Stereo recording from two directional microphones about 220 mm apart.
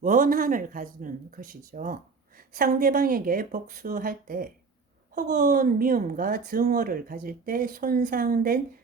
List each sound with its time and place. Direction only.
0.0 s a woman's voice: 40° right (ahead or behind)